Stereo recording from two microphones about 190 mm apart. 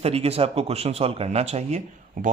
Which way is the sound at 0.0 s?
30° right (ahead or behind).